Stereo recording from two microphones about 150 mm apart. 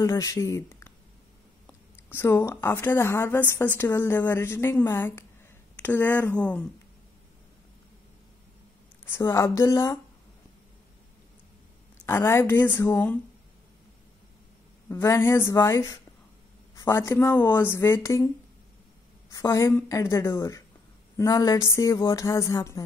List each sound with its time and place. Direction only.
0.0 s speech: 25° left (ahead or behind)
9.0 s speech: 20° left (ahead or behind)
12.1 s speech: 15° left (ahead or behind)
14.9 s speech: 20° left (ahead or behind)
19.3 s speech: 20° left (ahead or behind)